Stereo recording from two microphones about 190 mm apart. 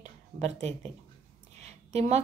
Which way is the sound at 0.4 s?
35° right (ahead or behind).